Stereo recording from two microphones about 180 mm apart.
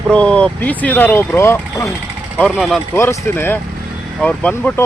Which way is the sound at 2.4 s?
Centre (ahead or behind).